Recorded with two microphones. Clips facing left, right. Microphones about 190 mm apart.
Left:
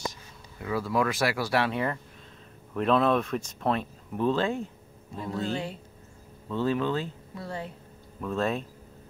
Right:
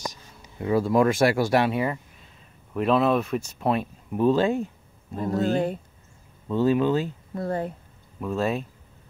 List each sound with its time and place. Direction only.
0.6 s speech: 25° right (ahead or behind)
5.1 s speech: 45° right (ahead or behind)
6.5 s speech: 15° right (ahead or behind)
7.3 s speech: 50° right (ahead or behind)
8.2 s speech: 10° right (ahead or behind)